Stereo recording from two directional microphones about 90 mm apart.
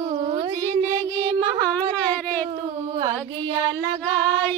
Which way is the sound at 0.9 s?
45° right (ahead or behind).